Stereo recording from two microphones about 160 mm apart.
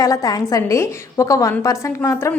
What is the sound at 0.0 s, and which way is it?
A woman's voice, 25° left (ahead or behind).